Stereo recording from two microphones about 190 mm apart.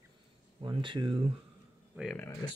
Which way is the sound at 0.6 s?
25° right (ahead or behind).